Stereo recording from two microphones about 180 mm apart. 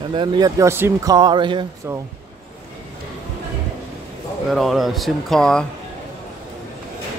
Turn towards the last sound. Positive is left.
turn(degrees=5)  # may be behind; listen again after turning